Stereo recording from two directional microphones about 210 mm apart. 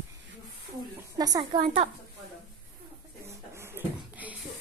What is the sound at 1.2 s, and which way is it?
Speech, 20° right (ahead or behind).